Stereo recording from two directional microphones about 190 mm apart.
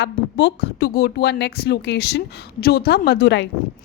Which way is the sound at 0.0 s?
70° left (ahead or behind).